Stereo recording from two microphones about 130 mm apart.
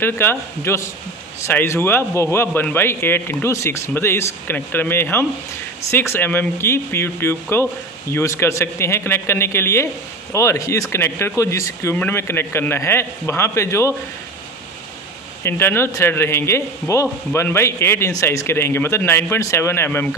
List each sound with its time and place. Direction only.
0.0 s a man's voice: 15° left (ahead or behind)
15.4 s speech: 20° left (ahead or behind)